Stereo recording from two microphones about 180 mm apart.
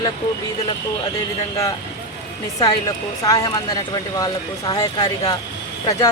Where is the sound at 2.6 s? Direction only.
20° left (ahead or behind).